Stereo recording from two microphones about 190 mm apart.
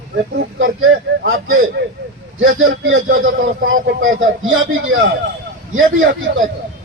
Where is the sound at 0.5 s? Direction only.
90° right.